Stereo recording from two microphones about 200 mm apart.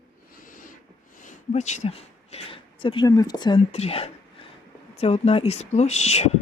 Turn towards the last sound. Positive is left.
turn(degrees=35)  # may be behind; listen again after turning